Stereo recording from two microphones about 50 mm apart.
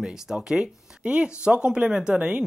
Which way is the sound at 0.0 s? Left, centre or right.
Centre.